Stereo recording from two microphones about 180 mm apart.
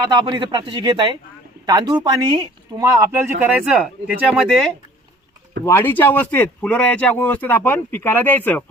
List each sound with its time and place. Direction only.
0.0 s speech: 25° right (ahead or behind); by 4.7 s centre (ahead or behind)
5.6 s speech: 10° left (ahead or behind)